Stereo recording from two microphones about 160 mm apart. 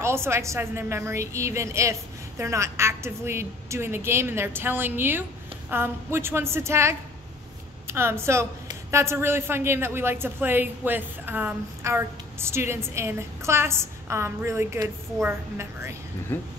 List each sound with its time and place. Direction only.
0.0 s a woman's voice: 15° right (ahead or behind)
16.3 s speech: 15° left (ahead or behind)